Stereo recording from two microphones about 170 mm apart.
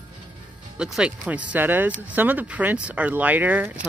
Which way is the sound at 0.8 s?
5° right (ahead or behind).